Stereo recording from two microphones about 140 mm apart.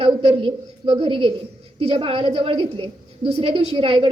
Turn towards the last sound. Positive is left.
turn(degrees=-40)  # may be behind; listen again after turning